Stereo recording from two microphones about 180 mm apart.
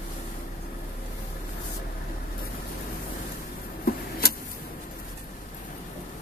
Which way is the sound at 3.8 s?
55° left (ahead or behind).